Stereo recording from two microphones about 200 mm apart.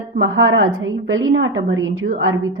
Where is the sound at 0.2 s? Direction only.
75° right (ahead or behind).